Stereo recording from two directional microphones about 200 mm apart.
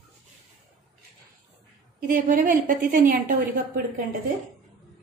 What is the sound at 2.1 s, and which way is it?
A woman's voice, 40° right (ahead or behind).